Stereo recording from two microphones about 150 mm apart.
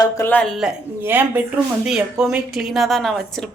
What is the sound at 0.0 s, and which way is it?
Speech, 15° left (ahead or behind).